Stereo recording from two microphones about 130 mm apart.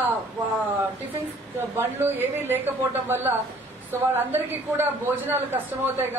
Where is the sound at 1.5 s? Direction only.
15° right (ahead or behind).